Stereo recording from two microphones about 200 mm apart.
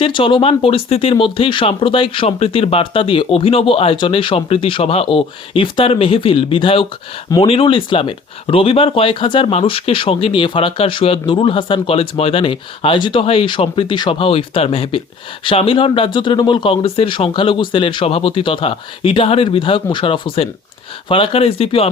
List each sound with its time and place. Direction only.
0.0 s speech: 25° left (ahead or behind)